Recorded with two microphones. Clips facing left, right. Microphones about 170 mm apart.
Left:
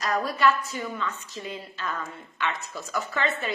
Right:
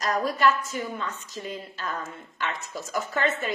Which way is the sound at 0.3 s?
45° right (ahead or behind).